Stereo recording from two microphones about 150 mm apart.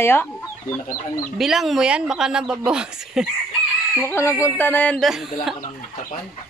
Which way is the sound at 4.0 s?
15° left (ahead or behind).